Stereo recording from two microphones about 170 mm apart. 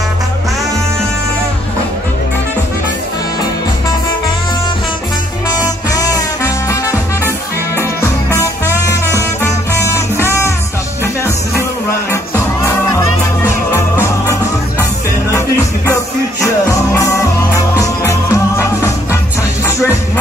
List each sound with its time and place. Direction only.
5.9 s music: 20° left (ahead or behind)
12.6 s music: 15° left (ahead or behind)
16.6 s music: 15° left (ahead or behind)